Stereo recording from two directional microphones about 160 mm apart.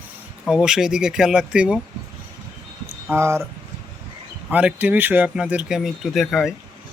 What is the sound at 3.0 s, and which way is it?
Speech, 15° right (ahead or behind).